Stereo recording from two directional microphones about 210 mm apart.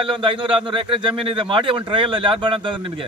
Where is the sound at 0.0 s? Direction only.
25° right (ahead or behind).